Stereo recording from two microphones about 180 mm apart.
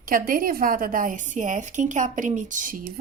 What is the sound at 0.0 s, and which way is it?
A woman's voice, 50° right (ahead or behind).